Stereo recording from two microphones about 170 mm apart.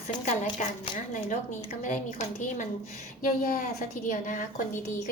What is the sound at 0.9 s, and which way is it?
Speech, 50° left (ahead or behind).